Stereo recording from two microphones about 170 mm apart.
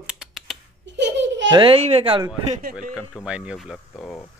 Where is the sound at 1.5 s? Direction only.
30° right (ahead or behind).